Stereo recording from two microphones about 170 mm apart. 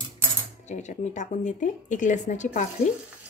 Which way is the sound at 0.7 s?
45° left (ahead or behind).